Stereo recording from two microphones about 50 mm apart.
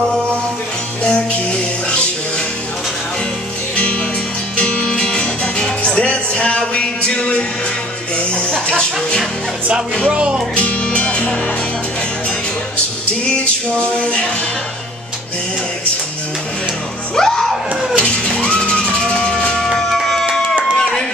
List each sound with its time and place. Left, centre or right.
1.0 s music: left
4.6 s music: left
10.0 s music: right
10.5 s music: left
13.7 s music: centre
17.2 s music: centre
19.7 s music: centre
20.5 s a sound: centre